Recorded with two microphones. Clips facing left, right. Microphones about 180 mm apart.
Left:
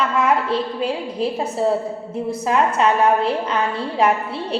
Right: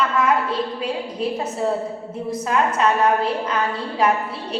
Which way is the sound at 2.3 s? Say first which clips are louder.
Left 2 dB; 30° left (ahead or behind).